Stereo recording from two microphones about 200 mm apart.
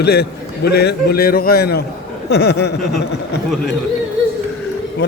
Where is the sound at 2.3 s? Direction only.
55° left (ahead or behind).